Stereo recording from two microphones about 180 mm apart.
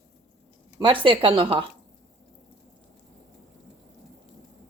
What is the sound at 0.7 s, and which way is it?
Speech, 25° right (ahead or behind).